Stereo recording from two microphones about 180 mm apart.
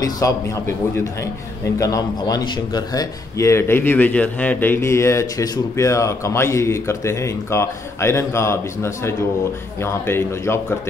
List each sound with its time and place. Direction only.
0.0 s a man's voice: 20° left (ahead or behind)
1.8 s a man's voice: 20° left (ahead or behind)